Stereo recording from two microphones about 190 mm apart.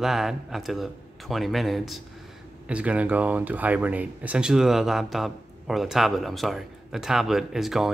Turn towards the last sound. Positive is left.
turn(degrees=0)  # may be behind; listen again after turning